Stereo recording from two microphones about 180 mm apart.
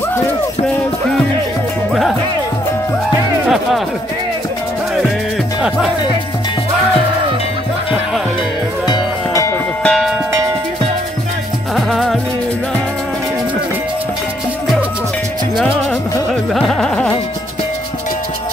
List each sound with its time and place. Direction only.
8.8 s music: 20° left (ahead or behind)
9.8 s bell: centre (ahead or behind)
11.7 s music: centre (ahead or behind)
15.5 s music: 5° left (ahead or behind)
16.5 s carnatic music: 5° left (ahead or behind)